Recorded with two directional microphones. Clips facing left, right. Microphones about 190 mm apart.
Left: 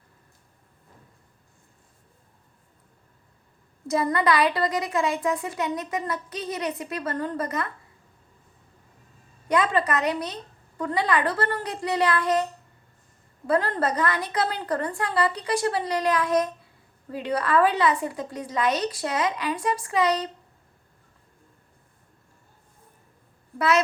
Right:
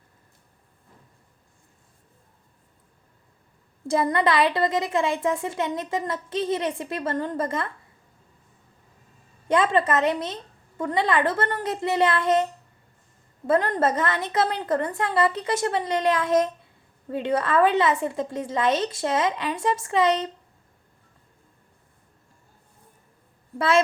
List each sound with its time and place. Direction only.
3.8 s a woman's voice: 25° right (ahead or behind)
9.5 s a woman's voice: 25° right (ahead or behind)
13.5 s a woman's voice: 20° right (ahead or behind)
23.6 s a woman's voice: 25° right (ahead or behind)